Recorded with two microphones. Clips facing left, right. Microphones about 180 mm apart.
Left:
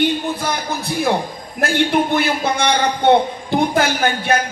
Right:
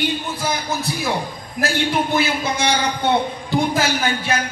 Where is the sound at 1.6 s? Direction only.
55° left (ahead or behind).